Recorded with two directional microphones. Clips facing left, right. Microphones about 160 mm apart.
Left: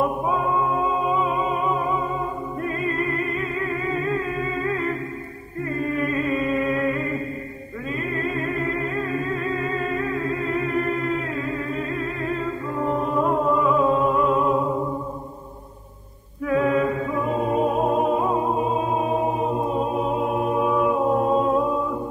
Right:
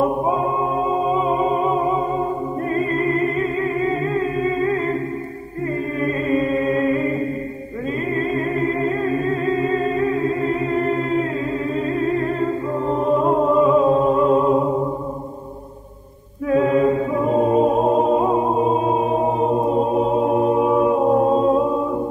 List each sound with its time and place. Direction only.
0.0 s music: 30° right (ahead or behind)
2.7 s humming: 30° right (ahead or behind)
5.9 s chant: 35° right (ahead or behind)
8.1 s a capella: 30° right (ahead or behind)
9.5 s humming: 30° right (ahead or behind)
11.9 s a capella: 30° right (ahead or behind)
12.9 s music: 25° right (ahead or behind)
16.4 s a capella: 30° right (ahead or behind)
19.2 s chant: 35° right (ahead or behind)